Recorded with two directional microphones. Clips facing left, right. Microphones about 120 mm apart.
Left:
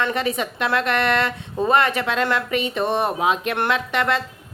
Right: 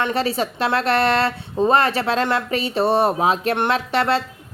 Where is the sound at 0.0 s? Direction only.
30° right (ahead or behind).